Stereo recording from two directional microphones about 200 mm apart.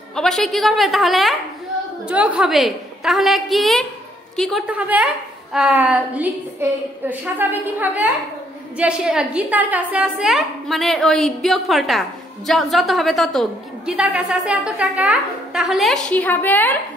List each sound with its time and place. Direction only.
0.1 s a woman's voice: centre (ahead or behind)